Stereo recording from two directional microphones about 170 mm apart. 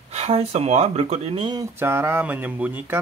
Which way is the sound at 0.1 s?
40° right (ahead or behind).